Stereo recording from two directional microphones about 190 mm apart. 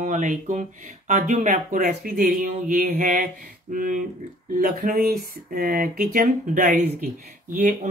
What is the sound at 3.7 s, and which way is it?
Speech, 45° right (ahead or behind).